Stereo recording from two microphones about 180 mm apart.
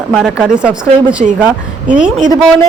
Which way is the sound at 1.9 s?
5° right (ahead or behind).